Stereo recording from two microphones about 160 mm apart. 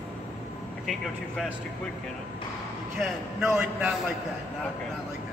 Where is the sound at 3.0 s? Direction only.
5° right (ahead or behind).